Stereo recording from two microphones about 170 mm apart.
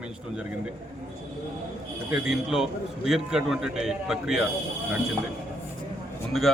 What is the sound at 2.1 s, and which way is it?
A man's voice, centre (ahead or behind).